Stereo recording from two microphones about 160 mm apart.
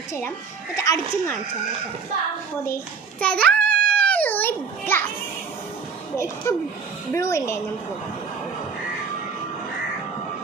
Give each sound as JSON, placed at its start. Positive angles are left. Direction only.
{"t": 0.1, "sound": "speech", "side_deg": 15}
{"t": 2.6, "sound": "child singing", "side_deg": 10}
{"t": 6.5, "sound": "speech", "side_deg": 15}